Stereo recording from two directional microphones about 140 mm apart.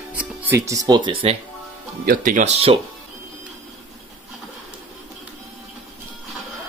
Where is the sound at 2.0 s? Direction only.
70° right (ahead or behind); by 2.8 s 45° right (ahead or behind).